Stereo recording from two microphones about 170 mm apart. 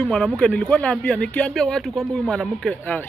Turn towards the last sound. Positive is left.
turn(degrees=5)  # may be behind; listen again after turning